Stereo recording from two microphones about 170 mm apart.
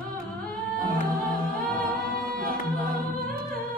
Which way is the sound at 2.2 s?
55° right (ahead or behind).